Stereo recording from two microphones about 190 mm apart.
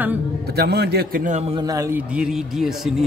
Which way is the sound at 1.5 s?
20° right (ahead or behind).